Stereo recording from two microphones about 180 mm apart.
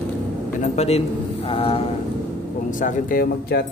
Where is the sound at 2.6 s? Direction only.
45° left (ahead or behind).